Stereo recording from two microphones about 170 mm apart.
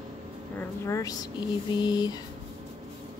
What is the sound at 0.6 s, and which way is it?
Speech, 15° left (ahead or behind).